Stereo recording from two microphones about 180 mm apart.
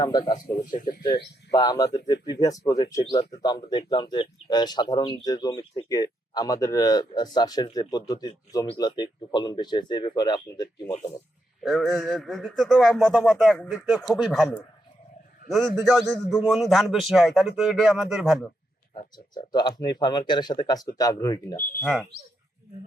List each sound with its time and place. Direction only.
0.0 s speech: 25° left (ahead or behind)
0.3 s speech: 45° left (ahead or behind)
1.5 s speech: 20° left (ahead or behind)
11.6 s speech: centre (ahead or behind)
16.0 s speech: centre (ahead or behind)
18.9 s speech: 25° left (ahead or behind)